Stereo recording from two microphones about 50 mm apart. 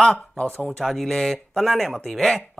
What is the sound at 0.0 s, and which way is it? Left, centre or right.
Speech, centre.